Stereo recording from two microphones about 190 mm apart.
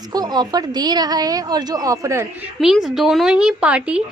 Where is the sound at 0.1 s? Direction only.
20° right (ahead or behind).